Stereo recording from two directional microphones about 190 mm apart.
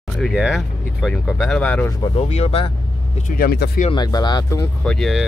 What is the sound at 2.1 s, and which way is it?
Speech, 35° left (ahead or behind).